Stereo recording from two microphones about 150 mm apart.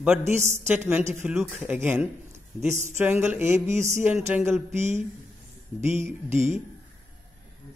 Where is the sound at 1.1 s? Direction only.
15° right (ahead or behind).